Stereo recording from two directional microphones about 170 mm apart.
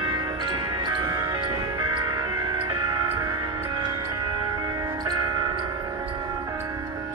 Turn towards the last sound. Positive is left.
turn(degrees=-25)  # may be behind; listen again after turning